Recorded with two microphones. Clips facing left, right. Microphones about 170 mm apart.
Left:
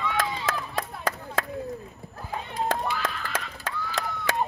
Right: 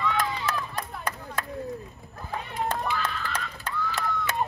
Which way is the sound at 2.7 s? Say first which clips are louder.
Left 2 dB; 90° left.